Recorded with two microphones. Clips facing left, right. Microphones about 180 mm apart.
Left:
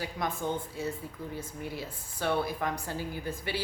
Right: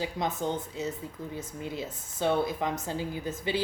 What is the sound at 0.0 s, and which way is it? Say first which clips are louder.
Speech: right 3 dB; 20° right (ahead or behind).